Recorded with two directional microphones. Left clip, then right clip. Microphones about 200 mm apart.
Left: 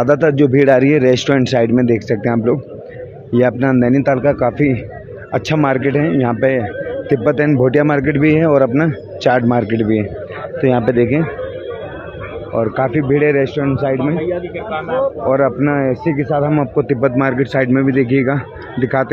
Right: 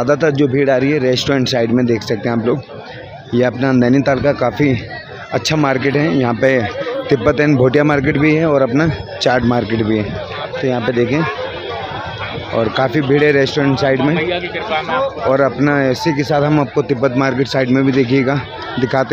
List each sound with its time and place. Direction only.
0.0 s a man's voice: 5° right (ahead or behind)
12.5 s a man's voice: 15° right (ahead or behind)
15.2 s a man's voice: 10° right (ahead or behind)
16.3 s speech: 20° right (ahead or behind)
16.7 s a man's voice: 10° right (ahead or behind)